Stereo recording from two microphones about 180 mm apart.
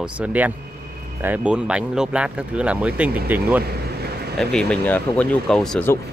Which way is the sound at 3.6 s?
60° right (ahead or behind).